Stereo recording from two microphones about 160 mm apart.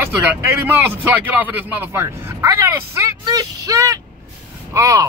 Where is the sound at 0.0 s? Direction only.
15° right (ahead or behind).